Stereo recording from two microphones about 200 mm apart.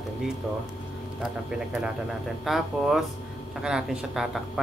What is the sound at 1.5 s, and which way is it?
A man's voice, 5° right (ahead or behind).